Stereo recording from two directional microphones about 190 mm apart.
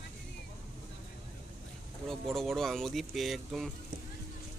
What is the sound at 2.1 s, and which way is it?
Speech, centre (ahead or behind).